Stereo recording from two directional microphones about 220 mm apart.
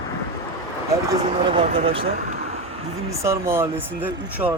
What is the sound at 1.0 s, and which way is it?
Speech, 20° right (ahead or behind).